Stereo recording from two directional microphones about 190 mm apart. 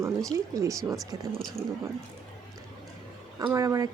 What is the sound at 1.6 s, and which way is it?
Speech, centre (ahead or behind).